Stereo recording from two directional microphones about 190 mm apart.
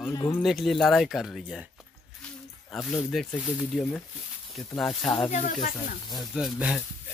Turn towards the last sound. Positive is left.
turn(degrees=-5)  # may be behind; listen again after turning